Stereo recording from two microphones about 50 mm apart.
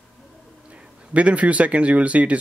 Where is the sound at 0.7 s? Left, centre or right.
Right.